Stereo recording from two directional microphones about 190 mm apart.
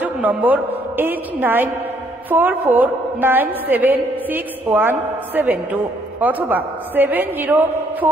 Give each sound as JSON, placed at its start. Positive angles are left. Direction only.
{"t": 0.0, "sound": "a woman's voice", "side_deg": -10}